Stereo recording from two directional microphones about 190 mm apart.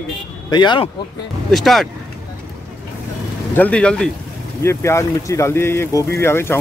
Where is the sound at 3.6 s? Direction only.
5° left (ahead or behind).